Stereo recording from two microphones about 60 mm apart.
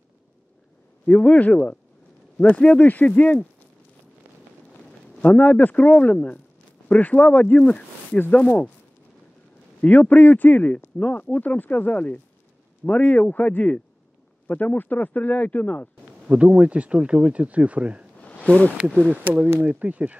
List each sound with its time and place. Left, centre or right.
1.0 s speech: centre
5.2 s speech: left
9.8 s speech: left
16.2 s speech: right
18.2 s a sound: left
19.1 s speech: right